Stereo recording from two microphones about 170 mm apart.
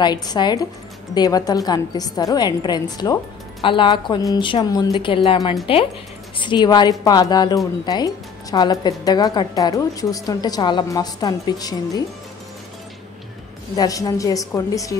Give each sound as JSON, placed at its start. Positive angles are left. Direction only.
{"t": 0.0, "sound": "a woman's voice", "side_deg": 25}
{"t": 13.7, "sound": "a woman's voice", "side_deg": 20}